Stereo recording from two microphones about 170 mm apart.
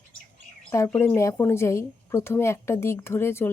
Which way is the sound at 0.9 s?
15° left (ahead or behind).